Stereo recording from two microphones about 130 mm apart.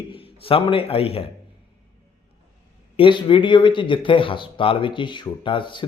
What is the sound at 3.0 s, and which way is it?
Speech, 40° left (ahead or behind).